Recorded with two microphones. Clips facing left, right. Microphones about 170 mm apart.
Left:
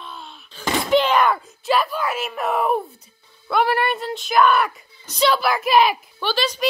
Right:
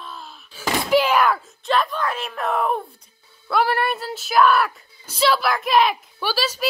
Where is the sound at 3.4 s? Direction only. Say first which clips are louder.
Left 1 dB; centre (ahead or behind).